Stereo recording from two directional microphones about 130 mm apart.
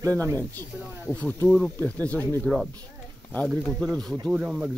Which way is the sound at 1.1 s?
10° left (ahead or behind).